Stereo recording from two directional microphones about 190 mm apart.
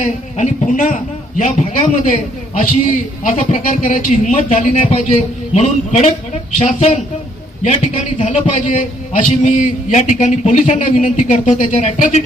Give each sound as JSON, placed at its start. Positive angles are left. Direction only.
{"t": 0.0, "sound": "speech", "side_deg": 40}
{"t": 3.2, "sound": "speech", "side_deg": 40}